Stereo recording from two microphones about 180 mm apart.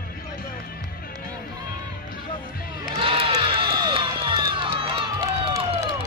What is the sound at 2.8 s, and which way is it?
Music, 25° right (ahead or behind).